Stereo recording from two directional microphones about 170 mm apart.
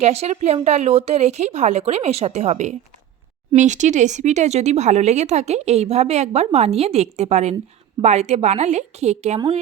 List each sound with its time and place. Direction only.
0.0 s speech: 40° right (ahead or behind)